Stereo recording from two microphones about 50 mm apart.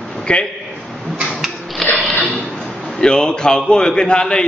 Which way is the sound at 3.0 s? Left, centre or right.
Centre.